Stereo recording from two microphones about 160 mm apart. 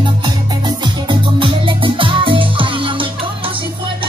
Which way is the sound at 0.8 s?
30° right (ahead or behind).